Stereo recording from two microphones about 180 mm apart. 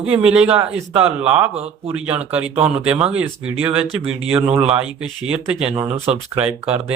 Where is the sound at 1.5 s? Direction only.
35° right (ahead or behind).